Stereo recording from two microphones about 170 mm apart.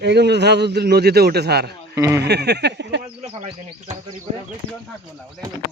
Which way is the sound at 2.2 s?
75° right (ahead or behind).